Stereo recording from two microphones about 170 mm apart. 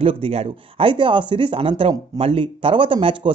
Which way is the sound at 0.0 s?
35° right (ahead or behind).